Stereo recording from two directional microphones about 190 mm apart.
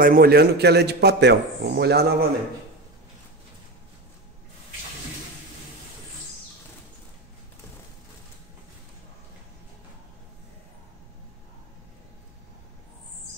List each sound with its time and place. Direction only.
0.0 s a man's voice: 50° right (ahead or behind)